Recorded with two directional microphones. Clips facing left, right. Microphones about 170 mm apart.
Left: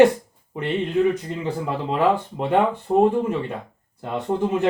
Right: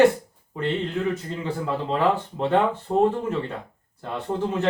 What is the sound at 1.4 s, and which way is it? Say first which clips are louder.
Speech: left 1 dB; 15° left (ahead or behind).